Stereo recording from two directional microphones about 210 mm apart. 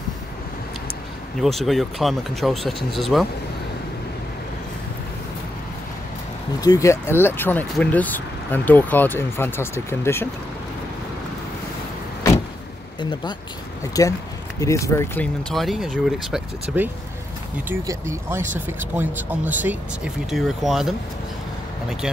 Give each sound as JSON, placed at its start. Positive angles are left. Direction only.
{"t": 1.4, "sound": "speech", "side_deg": 0}
{"t": 6.6, "sound": "speech", "side_deg": 15}
{"t": 14.0, "sound": "speech", "side_deg": 15}
{"t": 15.5, "sound": "speech", "side_deg": 0}